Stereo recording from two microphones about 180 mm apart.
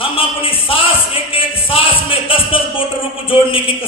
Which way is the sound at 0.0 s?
30° left (ahead or behind).